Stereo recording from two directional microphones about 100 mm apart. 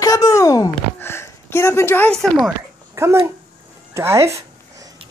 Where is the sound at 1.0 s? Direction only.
25° left (ahead or behind).